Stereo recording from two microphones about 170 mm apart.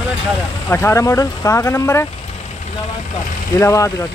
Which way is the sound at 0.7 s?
15° left (ahead or behind).